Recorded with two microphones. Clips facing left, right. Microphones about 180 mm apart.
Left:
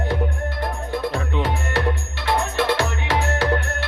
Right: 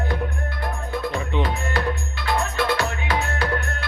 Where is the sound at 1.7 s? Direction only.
75° left (ahead or behind).